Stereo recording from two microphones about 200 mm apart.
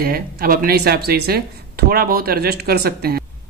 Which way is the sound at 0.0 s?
50° right (ahead or behind).